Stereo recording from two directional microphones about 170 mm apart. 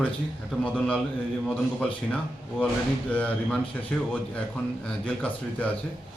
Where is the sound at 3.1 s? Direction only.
10° left (ahead or behind).